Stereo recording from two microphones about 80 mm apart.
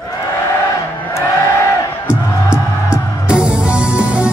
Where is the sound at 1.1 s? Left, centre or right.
Left.